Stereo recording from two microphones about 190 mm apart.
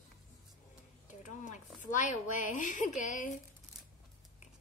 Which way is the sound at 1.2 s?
40° left (ahead or behind).